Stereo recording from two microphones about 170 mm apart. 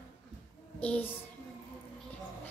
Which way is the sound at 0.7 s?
10° left (ahead or behind).